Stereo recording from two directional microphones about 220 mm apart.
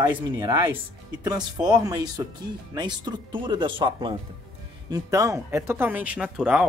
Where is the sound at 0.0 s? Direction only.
10° right (ahead or behind).